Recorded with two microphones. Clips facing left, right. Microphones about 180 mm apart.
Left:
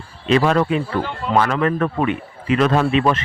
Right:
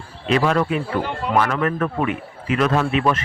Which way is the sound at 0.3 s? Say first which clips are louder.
Left 2 dB; 30° left (ahead or behind).